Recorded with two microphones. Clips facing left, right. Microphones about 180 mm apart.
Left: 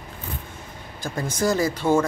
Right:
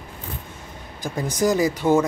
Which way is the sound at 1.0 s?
15° right (ahead or behind).